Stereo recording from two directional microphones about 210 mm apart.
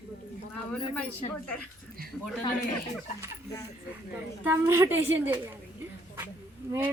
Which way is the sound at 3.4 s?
15° left (ahead or behind).